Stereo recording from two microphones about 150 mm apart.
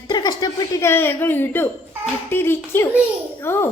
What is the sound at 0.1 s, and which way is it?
A woman's voice, 25° left (ahead or behind).